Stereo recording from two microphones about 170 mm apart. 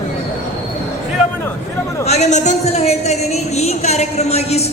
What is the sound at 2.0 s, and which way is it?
A man's voice, 40° left (ahead or behind).